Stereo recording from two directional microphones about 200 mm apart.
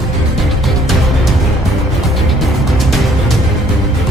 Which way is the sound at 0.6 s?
Centre (ahead or behind).